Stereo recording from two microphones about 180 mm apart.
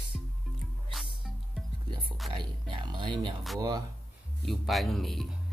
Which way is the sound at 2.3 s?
25° right (ahead or behind).